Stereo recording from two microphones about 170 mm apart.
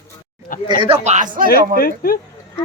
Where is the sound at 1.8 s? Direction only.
60° left (ahead or behind).